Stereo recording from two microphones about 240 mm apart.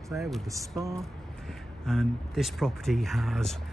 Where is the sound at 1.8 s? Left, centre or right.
Centre.